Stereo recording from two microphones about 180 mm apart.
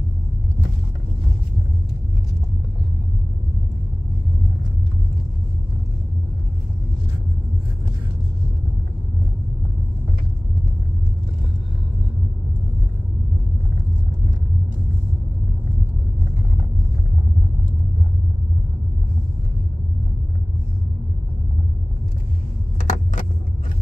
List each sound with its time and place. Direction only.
22.8 s vehicle: 45° left (ahead or behind)